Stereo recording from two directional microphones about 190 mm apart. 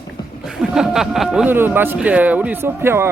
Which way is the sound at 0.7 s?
Centre (ahead or behind).